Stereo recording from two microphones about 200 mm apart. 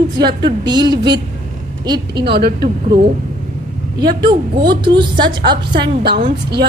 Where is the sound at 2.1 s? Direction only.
55° right (ahead or behind).